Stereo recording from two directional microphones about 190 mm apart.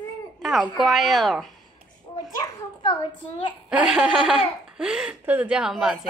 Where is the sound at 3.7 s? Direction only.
5° right (ahead or behind).